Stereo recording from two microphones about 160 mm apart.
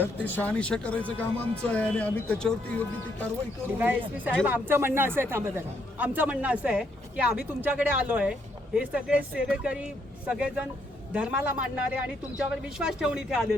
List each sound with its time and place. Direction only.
0.0 s speech: 10° left (ahead or behind)
3.8 s a man's voice: 10° right (ahead or behind)